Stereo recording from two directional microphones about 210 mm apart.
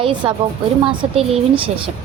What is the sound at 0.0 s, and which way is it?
A woman's voice, 25° right (ahead or behind).